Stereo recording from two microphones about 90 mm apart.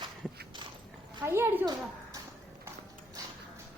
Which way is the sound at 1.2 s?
25° right (ahead or behind).